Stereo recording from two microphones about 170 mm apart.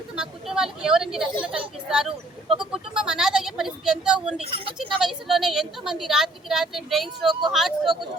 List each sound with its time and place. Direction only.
0.2 s a woman's voice: 5° right (ahead or behind)
1.3 s a woman's voice: 30° right (ahead or behind)
1.5 s a woman's voice: 5° right (ahead or behind)
2.6 s a sound: 5° right (ahead or behind)
4.4 s speech: 35° right (ahead or behind)
4.8 s a woman's voice: centre (ahead or behind)